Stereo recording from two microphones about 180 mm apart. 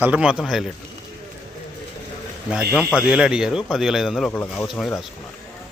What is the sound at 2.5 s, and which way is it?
Speech, 5° right (ahead or behind).